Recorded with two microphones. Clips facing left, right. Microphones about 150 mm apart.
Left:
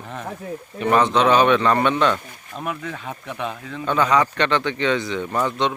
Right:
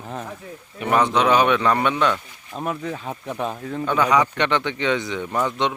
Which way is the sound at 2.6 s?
30° right (ahead or behind).